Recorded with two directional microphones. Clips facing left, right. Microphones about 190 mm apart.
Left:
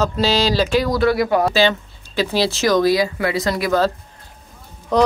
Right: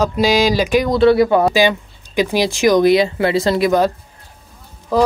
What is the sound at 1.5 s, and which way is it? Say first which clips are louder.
Speech: right 2 dB; 15° right (ahead or behind).